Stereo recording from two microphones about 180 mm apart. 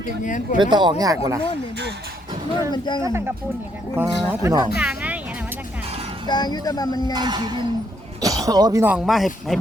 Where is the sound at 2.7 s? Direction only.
25° left (ahead or behind).